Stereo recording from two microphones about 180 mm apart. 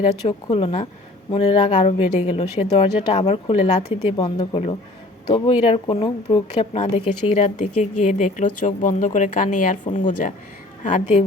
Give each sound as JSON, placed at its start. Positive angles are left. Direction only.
{"t": 0.3, "sound": "a woman's voice", "side_deg": 30}